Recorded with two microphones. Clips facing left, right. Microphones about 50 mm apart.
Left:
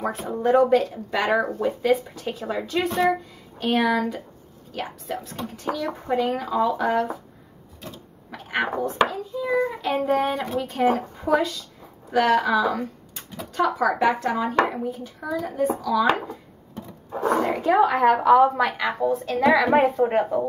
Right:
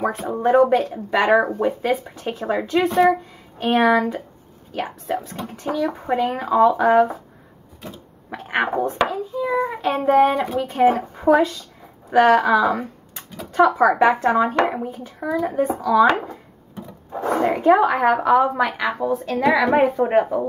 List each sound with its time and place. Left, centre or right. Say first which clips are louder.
0.3 s speech: right 2 dB; right
8.3 s a child's voice: right 4 dB; right
10.3 s speech: right 4 dB; centre
10.6 s speech: right 4 dB; right
17.2 s speech: right 3 dB; right
17.8 s a woman's voice: even; centre